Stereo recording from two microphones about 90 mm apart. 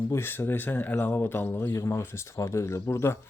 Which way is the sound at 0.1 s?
25° left (ahead or behind).